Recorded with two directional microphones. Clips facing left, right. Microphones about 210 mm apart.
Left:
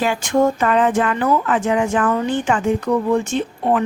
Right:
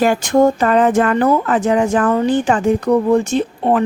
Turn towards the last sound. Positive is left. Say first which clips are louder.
# right 3 dB
turn(degrees=-35)  # may be behind; listen again after turning